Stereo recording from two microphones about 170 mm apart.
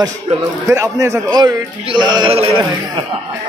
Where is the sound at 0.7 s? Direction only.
15° right (ahead or behind); by 2.6 s 35° right (ahead or behind).